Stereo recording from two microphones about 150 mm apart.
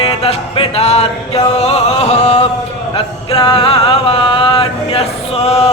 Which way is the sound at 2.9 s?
35° left (ahead or behind).